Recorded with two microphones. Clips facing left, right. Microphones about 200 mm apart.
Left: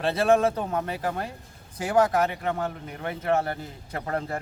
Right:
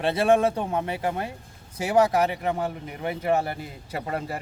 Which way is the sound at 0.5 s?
10° right (ahead or behind).